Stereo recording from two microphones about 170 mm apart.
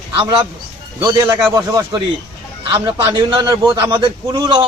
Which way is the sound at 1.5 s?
20° right (ahead or behind).